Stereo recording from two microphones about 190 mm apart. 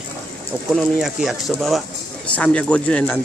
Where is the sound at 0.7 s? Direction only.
Centre (ahead or behind).